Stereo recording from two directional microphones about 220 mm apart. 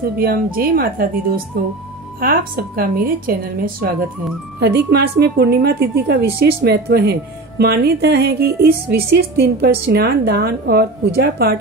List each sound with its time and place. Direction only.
0.0 s a woman's voice: 40° right (ahead or behind)